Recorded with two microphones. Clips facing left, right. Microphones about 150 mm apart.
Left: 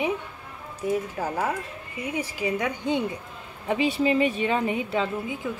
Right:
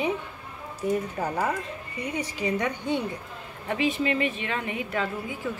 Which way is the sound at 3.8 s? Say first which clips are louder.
Left 3 dB; 35° left (ahead or behind).